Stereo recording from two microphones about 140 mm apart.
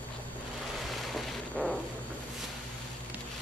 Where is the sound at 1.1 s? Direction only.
Centre (ahead or behind).